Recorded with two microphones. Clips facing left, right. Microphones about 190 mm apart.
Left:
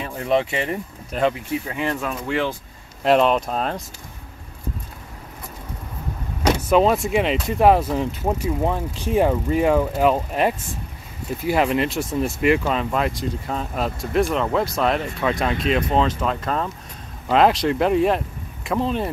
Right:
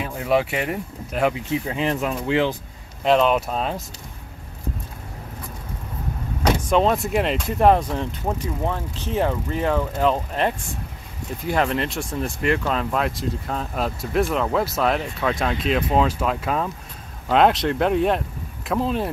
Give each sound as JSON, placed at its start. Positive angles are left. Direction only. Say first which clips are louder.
{"t": 0.0, "sound": "speech", "louder": "even", "side_deg": -5}
{"t": 1.7, "sound": "speech", "louder": "right 3 dB", "side_deg": -20}
{"t": 3.0, "sound": "speech", "louder": "left 1 dB", "side_deg": 0}
{"t": 6.7, "sound": "speech", "louder": "left 3 dB", "side_deg": 5}